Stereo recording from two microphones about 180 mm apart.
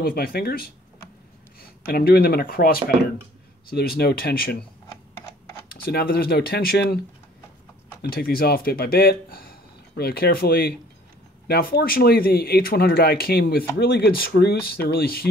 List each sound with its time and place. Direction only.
0.0 s speech: 55° left (ahead or behind)
1.9 s speech: 60° left (ahead or behind)
5.7 s speech: 60° left (ahead or behind)
8.0 s speech: 60° left (ahead or behind)